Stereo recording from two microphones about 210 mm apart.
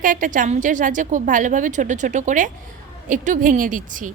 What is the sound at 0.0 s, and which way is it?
A woman's voice, 40° right (ahead or behind).